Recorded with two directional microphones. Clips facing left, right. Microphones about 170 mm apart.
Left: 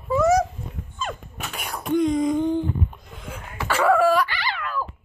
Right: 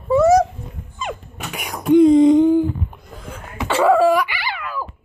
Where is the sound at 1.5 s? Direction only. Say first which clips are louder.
Right 9 dB; 15° right (ahead or behind).